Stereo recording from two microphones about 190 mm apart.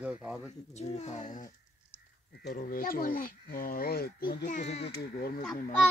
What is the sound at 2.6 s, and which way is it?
Speech, 50° left (ahead or behind).